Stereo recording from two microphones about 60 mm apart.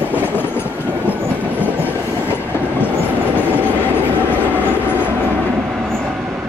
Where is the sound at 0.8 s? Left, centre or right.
Right.